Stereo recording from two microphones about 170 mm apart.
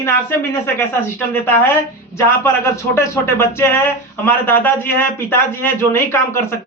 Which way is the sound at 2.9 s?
15° left (ahead or behind).